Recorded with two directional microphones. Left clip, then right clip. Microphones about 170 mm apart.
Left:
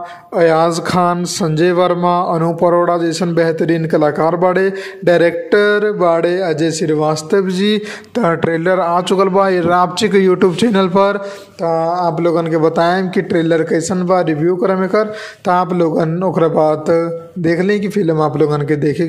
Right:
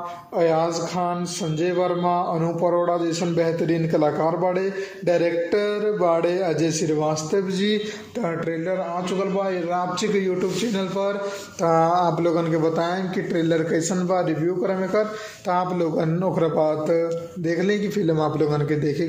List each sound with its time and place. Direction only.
0.4 s speech: 40° left (ahead or behind)
11.6 s speech: 20° left (ahead or behind)
12.2 s speech: 40° left (ahead or behind)